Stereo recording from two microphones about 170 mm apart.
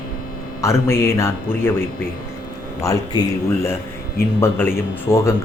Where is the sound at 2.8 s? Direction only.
20° left (ahead or behind).